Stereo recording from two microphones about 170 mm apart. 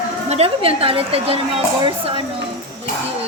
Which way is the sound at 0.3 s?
35° right (ahead or behind).